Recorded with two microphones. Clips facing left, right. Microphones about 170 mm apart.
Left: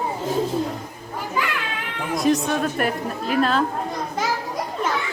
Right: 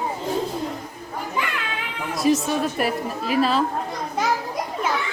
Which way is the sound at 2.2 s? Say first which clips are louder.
Even; centre (ahead or behind).